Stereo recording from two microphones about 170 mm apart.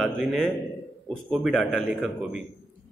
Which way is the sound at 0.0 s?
Centre (ahead or behind).